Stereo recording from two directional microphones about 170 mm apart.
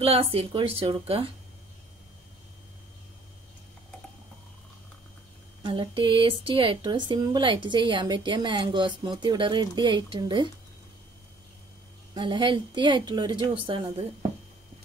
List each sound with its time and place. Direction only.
0.0 s speech: 35° right (ahead or behind)
5.6 s speech: 30° right (ahead or behind)
12.1 s speech: 25° right (ahead or behind)